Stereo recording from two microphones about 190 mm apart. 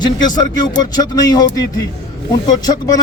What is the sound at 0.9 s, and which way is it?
Speech, 20° left (ahead or behind).